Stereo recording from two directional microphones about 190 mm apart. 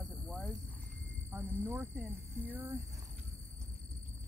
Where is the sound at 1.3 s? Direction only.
10° right (ahead or behind).